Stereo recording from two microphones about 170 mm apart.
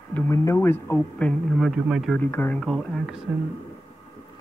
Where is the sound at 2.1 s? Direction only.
10° left (ahead or behind).